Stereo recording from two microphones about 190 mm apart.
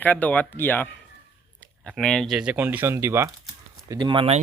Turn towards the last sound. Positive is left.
turn(degrees=-30)  # may be behind; listen again after turning